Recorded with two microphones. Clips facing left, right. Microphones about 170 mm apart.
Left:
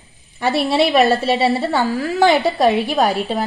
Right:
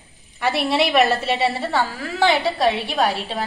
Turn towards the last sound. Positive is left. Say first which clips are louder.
# left 4 dB
turn(degrees=45)  # may be behind; listen again after turning